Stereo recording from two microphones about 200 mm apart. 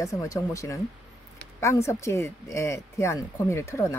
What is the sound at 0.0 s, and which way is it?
Speech, 15° left (ahead or behind).